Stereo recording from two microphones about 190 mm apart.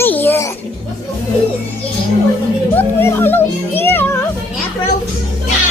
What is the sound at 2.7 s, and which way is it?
A child's voice, 10° left (ahead or behind).